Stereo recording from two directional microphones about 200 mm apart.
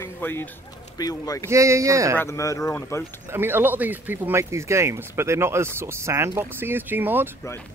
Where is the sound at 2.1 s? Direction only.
15° left (ahead or behind).